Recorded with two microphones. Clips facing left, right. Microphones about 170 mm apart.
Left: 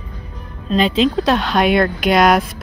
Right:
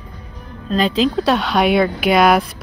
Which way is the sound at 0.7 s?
Centre (ahead or behind).